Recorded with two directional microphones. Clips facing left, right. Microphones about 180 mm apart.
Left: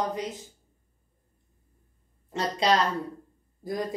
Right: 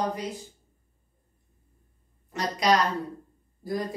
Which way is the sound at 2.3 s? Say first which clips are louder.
Even; 25° left (ahead or behind).